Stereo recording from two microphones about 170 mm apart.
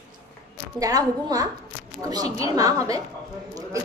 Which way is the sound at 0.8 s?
20° right (ahead or behind).